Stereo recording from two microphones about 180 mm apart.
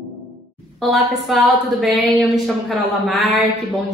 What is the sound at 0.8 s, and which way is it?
A woman's voice, centre (ahead or behind).